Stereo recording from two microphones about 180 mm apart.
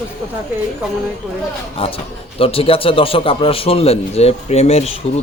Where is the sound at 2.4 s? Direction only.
30° left (ahead or behind).